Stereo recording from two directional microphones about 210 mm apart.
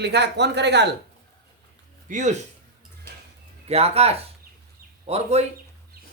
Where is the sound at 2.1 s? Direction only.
35° right (ahead or behind).